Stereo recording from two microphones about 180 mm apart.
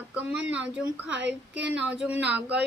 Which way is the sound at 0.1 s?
5° right (ahead or behind).